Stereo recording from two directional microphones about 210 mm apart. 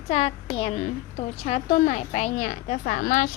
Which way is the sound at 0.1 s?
25° left (ahead or behind).